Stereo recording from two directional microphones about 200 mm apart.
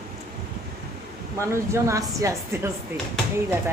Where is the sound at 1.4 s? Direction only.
15° right (ahead or behind).